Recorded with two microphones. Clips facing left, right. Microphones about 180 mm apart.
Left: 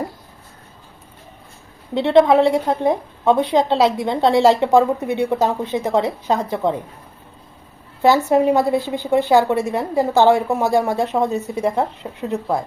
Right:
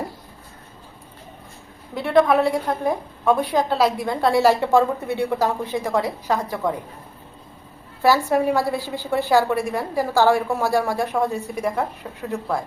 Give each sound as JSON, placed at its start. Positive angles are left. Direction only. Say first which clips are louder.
{"t": 2.0, "sound": "a woman's voice", "louder": "left 4 dB", "side_deg": 25}
{"t": 8.0, "sound": "a woman's voice", "louder": "left 4 dB", "side_deg": 20}